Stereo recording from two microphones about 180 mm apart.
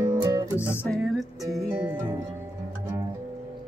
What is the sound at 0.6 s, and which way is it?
Music, 10° left (ahead or behind).